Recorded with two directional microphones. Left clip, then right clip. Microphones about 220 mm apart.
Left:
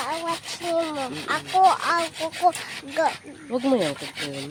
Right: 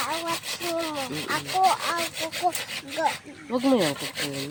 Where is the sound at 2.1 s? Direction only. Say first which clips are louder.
Left 5 dB; 20° right (ahead or behind).